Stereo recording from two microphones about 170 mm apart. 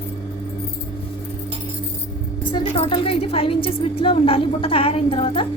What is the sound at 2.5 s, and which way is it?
Speech, 30° left (ahead or behind).